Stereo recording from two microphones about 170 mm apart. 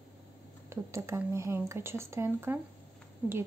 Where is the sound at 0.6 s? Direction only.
15° right (ahead or behind).